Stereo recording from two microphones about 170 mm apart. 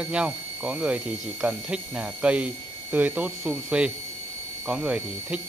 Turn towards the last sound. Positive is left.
turn(degrees=-5)  # may be behind; listen again after turning